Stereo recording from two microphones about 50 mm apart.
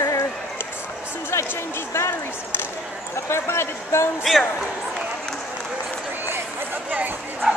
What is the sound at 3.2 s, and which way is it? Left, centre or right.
Speech, left.